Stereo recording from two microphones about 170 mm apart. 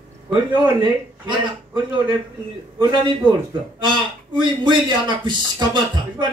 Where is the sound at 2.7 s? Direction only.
25° right (ahead or behind).